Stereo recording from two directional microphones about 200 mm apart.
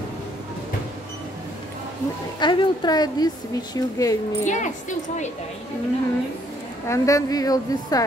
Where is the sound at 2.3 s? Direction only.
25° left (ahead or behind).